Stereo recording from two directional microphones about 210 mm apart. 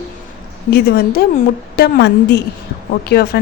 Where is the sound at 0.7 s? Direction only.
45° left (ahead or behind).